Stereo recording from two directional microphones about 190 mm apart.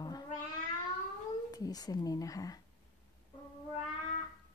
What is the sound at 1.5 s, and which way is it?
Speech, 20° left (ahead or behind).